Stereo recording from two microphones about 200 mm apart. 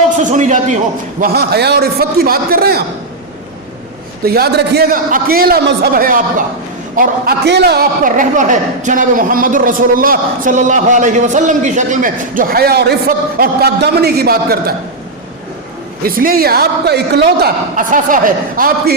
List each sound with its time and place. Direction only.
0.2 s a man's voice: 40° right (ahead or behind)
1.2 s a man's voice: 50° right (ahead or behind)
4.4 s a man's voice: 55° right (ahead or behind)
16.0 s a man's voice: 45° right (ahead or behind)